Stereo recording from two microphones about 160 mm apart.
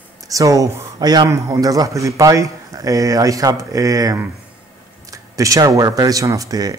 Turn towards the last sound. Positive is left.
turn(degrees=-20)  # may be behind; listen again after turning